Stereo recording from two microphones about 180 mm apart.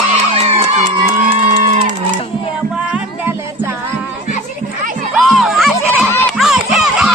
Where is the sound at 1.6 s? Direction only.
45° right (ahead or behind).